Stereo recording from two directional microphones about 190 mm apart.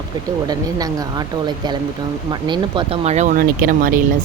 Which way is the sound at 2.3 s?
25° right (ahead or behind).